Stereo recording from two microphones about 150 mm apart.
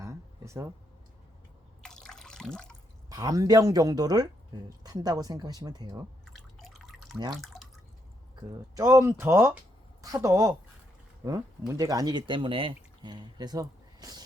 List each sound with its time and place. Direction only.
0.0 s a sound: 20° right (ahead or behind)
1.8 s drip: 5° left (ahead or behind)
3.1 s speech: 25° right (ahead or behind)
6.2 s drip: centre (ahead or behind)
8.7 s speech: 20° right (ahead or behind)